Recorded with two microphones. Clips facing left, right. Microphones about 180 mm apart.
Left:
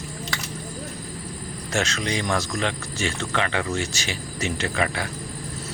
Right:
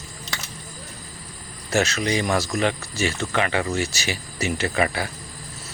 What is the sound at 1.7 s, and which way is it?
Speech, 5° right (ahead or behind).